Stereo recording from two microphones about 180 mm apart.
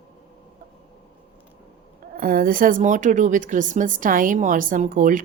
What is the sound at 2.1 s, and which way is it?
Speech, 55° right (ahead or behind).